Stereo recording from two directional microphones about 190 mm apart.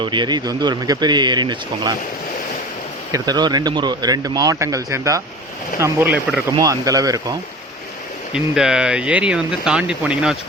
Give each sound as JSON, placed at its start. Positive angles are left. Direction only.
{"t": 0.0, "sound": "speech", "side_deg": -25}
{"t": 3.1, "sound": "speech", "side_deg": -20}
{"t": 6.6, "sound": "speech", "side_deg": -20}
{"t": 8.3, "sound": "speech", "side_deg": -5}